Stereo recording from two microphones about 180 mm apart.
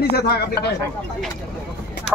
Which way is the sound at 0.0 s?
65° left (ahead or behind).